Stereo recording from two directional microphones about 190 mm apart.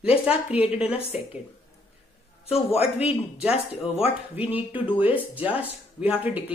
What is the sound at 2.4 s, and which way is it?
Speech, 30° left (ahead or behind).